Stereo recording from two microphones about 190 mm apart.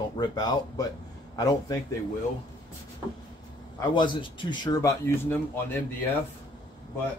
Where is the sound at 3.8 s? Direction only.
25° left (ahead or behind).